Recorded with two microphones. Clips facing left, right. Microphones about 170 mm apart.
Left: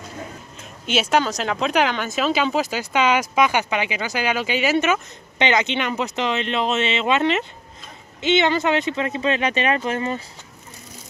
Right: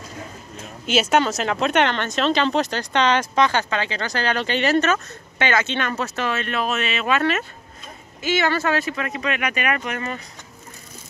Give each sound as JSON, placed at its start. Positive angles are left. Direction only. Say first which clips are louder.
{"t": 1.1, "sound": "speech", "louder": "left 1 dB", "side_deg": 0}